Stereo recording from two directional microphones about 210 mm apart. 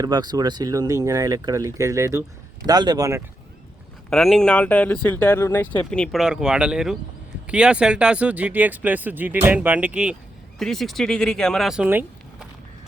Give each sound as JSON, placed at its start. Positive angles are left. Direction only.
{"t": 0.0, "sound": "speech", "side_deg": -20}
{"t": 4.1, "sound": "speech", "side_deg": 0}